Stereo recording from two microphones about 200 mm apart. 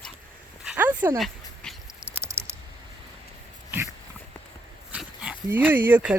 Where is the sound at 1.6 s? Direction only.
Centre (ahead or behind).